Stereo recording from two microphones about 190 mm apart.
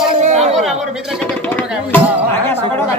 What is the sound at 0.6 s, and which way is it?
Speech, 5° left (ahead or behind).